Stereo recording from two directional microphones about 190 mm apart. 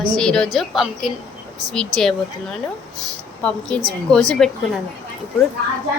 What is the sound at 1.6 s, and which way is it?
Speech, 20° right (ahead or behind).